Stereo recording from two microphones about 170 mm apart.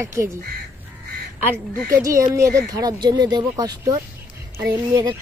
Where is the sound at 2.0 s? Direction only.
20° right (ahead or behind).